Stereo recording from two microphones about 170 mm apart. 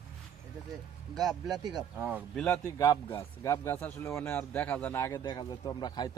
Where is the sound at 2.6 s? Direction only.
20° left (ahead or behind).